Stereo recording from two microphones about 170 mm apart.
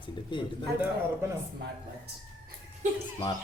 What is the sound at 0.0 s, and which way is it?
Speech, 25° left (ahead or behind).